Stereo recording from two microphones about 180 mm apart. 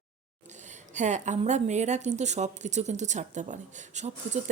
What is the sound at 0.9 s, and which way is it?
A woman's voice, 40° right (ahead or behind).